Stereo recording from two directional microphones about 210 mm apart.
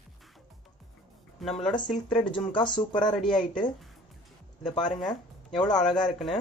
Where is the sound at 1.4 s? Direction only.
Centre (ahead or behind).